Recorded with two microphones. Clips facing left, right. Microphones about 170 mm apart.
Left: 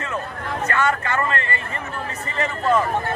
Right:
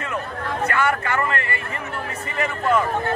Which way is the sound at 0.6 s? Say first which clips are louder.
Even; 10° right (ahead or behind).